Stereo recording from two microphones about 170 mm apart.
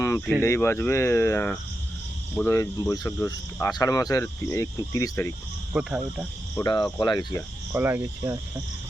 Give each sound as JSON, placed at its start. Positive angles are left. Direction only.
{"t": 0.4, "sound": "speech", "side_deg": 15}
{"t": 5.7, "sound": "cricket", "side_deg": -5}
{"t": 6.6, "sound": "speech", "side_deg": 25}
{"t": 7.7, "sound": "cricket", "side_deg": -10}